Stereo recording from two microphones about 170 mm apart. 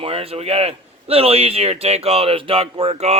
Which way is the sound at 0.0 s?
35° right (ahead or behind).